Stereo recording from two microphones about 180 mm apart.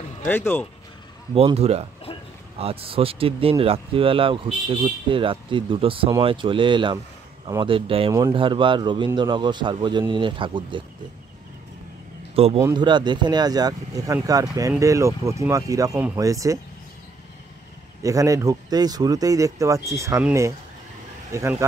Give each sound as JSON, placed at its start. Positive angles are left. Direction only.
{"t": 0.3, "sound": "speech", "side_deg": 10}
{"t": 1.3, "sound": "speech", "side_deg": -35}
{"t": 2.1, "sound": "a sound", "side_deg": 30}
{"t": 2.6, "sound": "speech", "side_deg": -30}
{"t": 12.5, "sound": "speech", "side_deg": -20}
{"t": 18.0, "sound": "speech", "side_deg": -20}